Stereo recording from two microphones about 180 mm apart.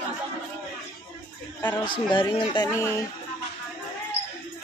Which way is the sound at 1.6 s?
25° left (ahead or behind).